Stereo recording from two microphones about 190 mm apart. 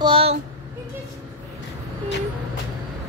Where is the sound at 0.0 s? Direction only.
30° right (ahead or behind).